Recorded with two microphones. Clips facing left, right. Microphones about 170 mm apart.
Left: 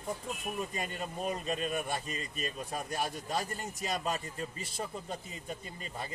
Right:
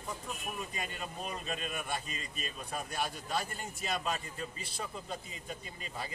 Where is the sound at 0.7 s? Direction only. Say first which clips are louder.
Left 3 dB; 45° left (ahead or behind).